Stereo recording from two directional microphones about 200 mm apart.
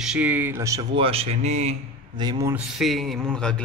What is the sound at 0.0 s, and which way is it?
Speech, 5° right (ahead or behind).